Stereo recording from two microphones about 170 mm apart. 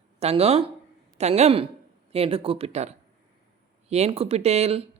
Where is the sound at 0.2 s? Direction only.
35° right (ahead or behind).